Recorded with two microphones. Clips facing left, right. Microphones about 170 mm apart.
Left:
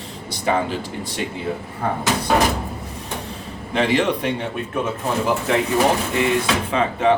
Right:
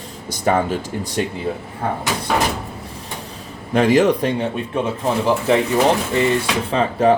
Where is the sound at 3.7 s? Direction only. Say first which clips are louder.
Right 5 dB; 45° right (ahead or behind).